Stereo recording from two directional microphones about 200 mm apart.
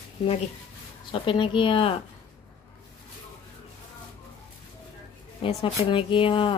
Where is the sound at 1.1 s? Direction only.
25° left (ahead or behind).